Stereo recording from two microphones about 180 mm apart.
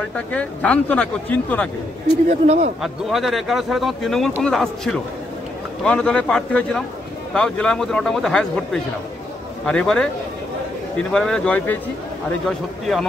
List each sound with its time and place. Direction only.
0.1 s speech: 5° left (ahead or behind)
2.2 s speech: 35° right (ahead or behind)
2.8 s speech: centre (ahead or behind)
9.7 s speech: 5° left (ahead or behind)
11.1 s speech: 5° left (ahead or behind)